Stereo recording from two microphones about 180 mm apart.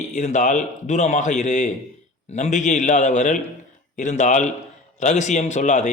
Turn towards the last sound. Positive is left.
turn(degrees=40)  # may be behind; listen again after turning